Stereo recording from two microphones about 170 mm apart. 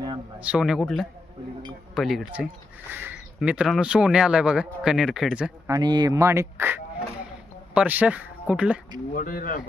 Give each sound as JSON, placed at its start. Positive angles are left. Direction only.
{"t": 0.4, "sound": "speech", "side_deg": -5}
{"t": 5.7, "sound": "speech", "side_deg": -25}
{"t": 9.1, "sound": "speech", "side_deg": 55}